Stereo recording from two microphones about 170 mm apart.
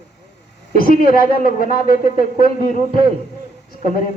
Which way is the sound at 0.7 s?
60° left (ahead or behind).